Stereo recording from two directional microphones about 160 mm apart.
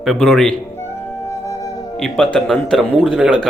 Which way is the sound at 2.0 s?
Centre (ahead or behind).